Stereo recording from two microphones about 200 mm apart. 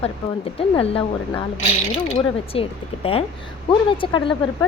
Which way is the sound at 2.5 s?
30° left (ahead or behind).